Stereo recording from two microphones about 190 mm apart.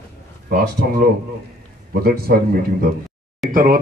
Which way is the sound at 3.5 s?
45° right (ahead or behind).